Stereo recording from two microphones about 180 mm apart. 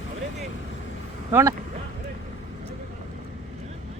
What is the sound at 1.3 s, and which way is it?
Speech, 15° right (ahead or behind).